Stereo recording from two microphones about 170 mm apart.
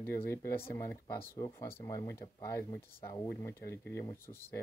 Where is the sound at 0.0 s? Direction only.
15° left (ahead or behind).